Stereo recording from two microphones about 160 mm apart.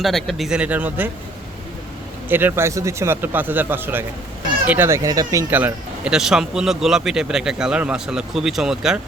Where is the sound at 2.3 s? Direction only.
15° right (ahead or behind).